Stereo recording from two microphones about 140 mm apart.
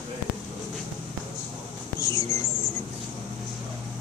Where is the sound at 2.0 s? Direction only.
20° left (ahead or behind).